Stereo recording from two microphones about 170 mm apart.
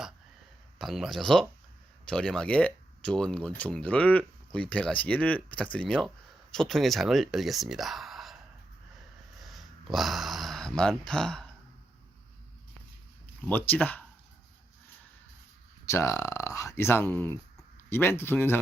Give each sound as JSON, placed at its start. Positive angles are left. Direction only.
{"t": 0.8, "sound": "speech", "side_deg": 0}
{"t": 9.4, "sound": "a sound", "side_deg": 0}
{"t": 13.4, "sound": "speech", "side_deg": 10}
{"t": 15.9, "sound": "speech", "side_deg": 15}